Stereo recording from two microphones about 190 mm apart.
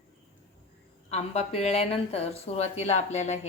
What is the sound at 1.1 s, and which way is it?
A woman's voice, 35° left (ahead or behind).